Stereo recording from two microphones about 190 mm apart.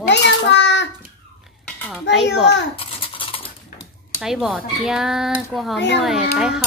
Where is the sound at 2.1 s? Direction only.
65° left (ahead or behind).